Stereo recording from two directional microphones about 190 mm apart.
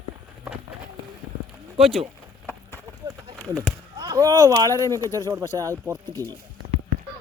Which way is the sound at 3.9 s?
20° right (ahead or behind).